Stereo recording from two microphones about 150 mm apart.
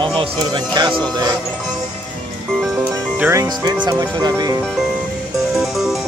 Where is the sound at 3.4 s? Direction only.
30° right (ahead or behind).